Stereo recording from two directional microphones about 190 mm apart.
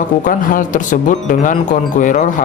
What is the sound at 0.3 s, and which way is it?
Speech, 45° left (ahead or behind).